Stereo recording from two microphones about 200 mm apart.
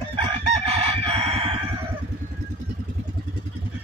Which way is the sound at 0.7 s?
30° right (ahead or behind).